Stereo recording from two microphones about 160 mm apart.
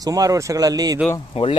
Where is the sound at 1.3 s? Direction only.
35° left (ahead or behind).